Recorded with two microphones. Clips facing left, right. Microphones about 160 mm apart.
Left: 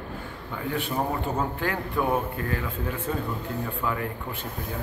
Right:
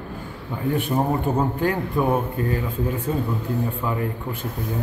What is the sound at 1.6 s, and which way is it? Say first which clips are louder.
Speech: right 5 dB; 20° right (ahead or behind).